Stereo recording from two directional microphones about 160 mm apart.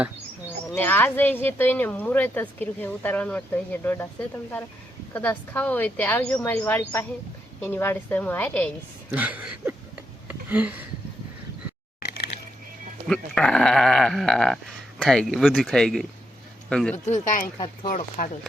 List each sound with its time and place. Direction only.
0.7 s speech: 10° left (ahead or behind)
5.1 s speech: 10° left (ahead or behind)
9.1 s a sound: 10° right (ahead or behind)
13.1 s speech: 5° left (ahead or behind)
17.1 s speech: 55° left (ahead or behind)